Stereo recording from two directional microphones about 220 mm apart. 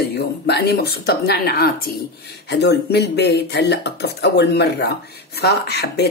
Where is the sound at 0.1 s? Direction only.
50° left (ahead or behind).